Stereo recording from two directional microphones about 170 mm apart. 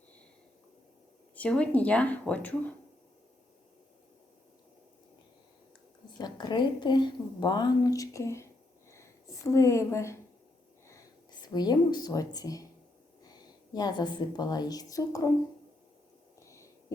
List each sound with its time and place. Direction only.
1.4 s speech: 5° left (ahead or behind)
6.1 s a woman's voice: 25° left (ahead or behind)
8.9 s a sound: 15° left (ahead or behind)
10.8 s a woman's voice: 20° left (ahead or behind)